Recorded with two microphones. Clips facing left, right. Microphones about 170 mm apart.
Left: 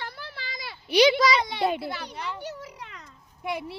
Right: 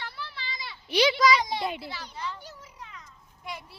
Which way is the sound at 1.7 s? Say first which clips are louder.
Left 6 dB; 55° left (ahead or behind).